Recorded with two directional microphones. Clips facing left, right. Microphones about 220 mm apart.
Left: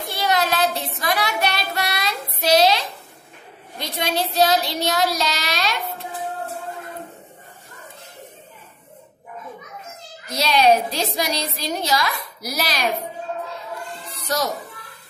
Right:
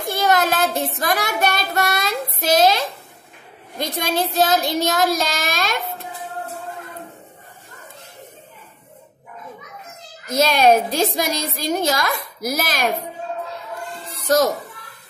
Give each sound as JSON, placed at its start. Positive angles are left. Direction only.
{"t": 0.1, "sound": "child singing", "side_deg": -50}
{"t": 2.4, "sound": "dishes", "side_deg": -50}
{"t": 3.7, "sound": "child singing", "side_deg": -50}
{"t": 10.2, "sound": "a woman's voice", "side_deg": -50}
{"t": 14.2, "sound": "speech", "side_deg": -50}